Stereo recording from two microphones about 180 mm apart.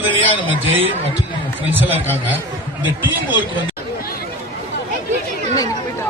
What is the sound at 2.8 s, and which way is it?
Speech, 10° right (ahead or behind).